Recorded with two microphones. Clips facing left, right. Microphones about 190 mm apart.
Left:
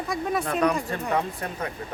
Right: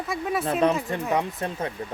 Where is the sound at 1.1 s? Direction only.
25° right (ahead or behind).